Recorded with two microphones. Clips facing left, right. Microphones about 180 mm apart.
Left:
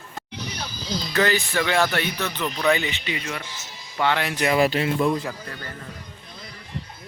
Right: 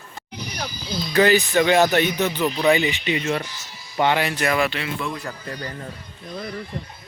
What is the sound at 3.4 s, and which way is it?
Speech, 20° left (ahead or behind).